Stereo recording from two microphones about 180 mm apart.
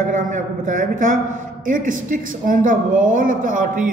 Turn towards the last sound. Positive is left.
turn(degrees=-50)  # may be behind; listen again after turning